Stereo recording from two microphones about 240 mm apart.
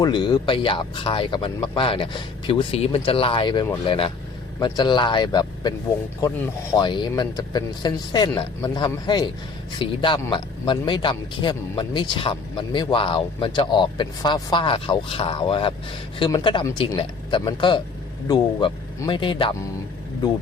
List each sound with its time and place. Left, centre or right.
0.0 s speech: centre
6.7 s speech: centre